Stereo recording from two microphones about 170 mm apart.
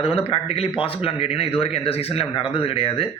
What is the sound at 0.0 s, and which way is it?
Speech, 35° left (ahead or behind).